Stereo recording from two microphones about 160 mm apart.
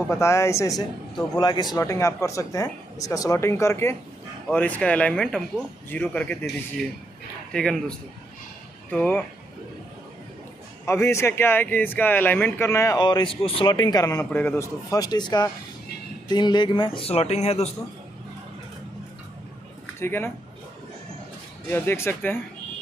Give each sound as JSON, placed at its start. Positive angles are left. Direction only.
{"t": 0.1, "sound": "speech", "side_deg": 20}
{"t": 7.5, "sound": "speech", "side_deg": 5}
{"t": 8.9, "sound": "speech", "side_deg": 10}
{"t": 10.9, "sound": "speech", "side_deg": 15}
{"t": 20.0, "sound": "speech", "side_deg": 15}
{"t": 21.6, "sound": "speech", "side_deg": 15}